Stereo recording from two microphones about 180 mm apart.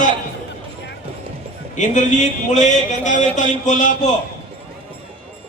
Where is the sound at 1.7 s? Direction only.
45° left (ahead or behind).